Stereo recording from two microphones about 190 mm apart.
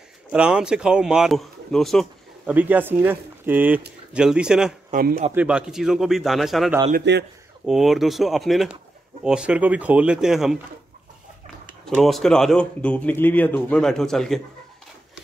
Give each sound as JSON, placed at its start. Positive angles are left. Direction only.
{"t": 0.3, "sound": "speech", "side_deg": -5}
{"t": 2.5, "sound": "speech", "side_deg": -10}
{"t": 4.9, "sound": "speech", "side_deg": -50}
{"t": 5.3, "sound": "speech", "side_deg": -5}
{"t": 7.1, "sound": "speech", "side_deg": -65}
{"t": 7.6, "sound": "speech", "side_deg": 0}
{"t": 11.8, "sound": "speech", "side_deg": 0}